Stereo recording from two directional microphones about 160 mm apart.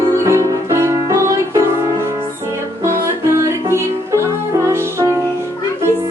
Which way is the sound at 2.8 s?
15° right (ahead or behind).